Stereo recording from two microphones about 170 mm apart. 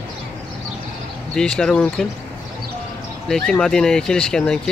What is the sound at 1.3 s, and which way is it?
Speech, 5° left (ahead or behind).